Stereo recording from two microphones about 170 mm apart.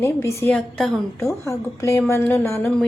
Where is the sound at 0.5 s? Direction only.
5° left (ahead or behind).